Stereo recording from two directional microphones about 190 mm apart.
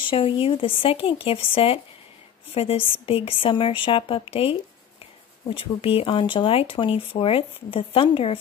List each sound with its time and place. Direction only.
0.0 s speech: 30° left (ahead or behind)